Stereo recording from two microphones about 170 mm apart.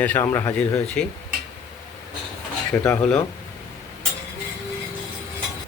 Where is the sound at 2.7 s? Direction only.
10° left (ahead or behind).